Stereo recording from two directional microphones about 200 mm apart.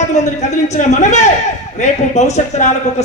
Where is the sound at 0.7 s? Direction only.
35° left (ahead or behind).